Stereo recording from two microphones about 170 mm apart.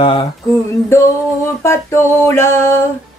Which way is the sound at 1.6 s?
15° left (ahead or behind).